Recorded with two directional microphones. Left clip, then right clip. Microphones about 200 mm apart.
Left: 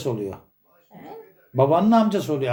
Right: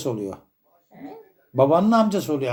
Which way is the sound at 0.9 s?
5° left (ahead or behind).